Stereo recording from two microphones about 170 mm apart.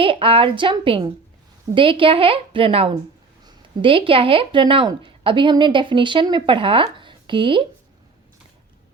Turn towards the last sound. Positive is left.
turn(degrees=-30)  # may be behind; listen again after turning